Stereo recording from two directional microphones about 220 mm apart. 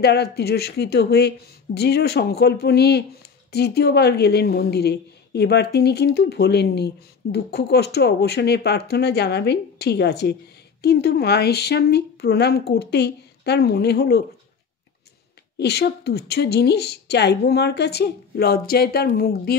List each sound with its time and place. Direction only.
0.0 s a woman's voice: 45° left (ahead or behind)
15.5 s a woman's voice: 50° left (ahead or behind)